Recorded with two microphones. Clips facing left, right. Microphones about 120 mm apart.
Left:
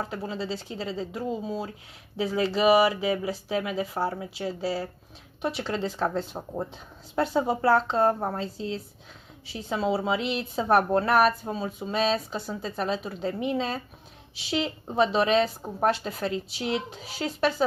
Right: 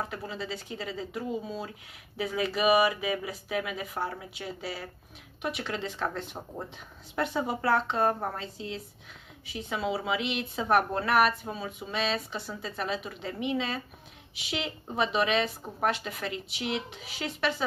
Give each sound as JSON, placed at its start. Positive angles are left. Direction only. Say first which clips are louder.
{"t": 0.1, "sound": "a woman's voice", "louder": "left 4 dB", "side_deg": 30}